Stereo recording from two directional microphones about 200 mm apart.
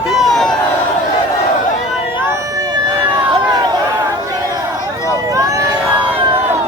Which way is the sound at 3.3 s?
20° right (ahead or behind).